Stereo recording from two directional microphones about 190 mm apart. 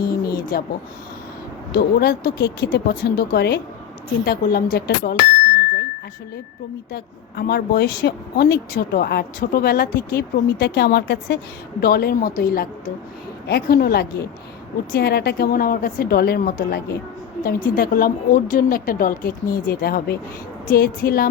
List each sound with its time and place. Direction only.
0.0 s a sound: 50° left (ahead or behind)
1.7 s a woman's voice: 55° left (ahead or behind)
6.9 s a woman's voice: 55° left (ahead or behind)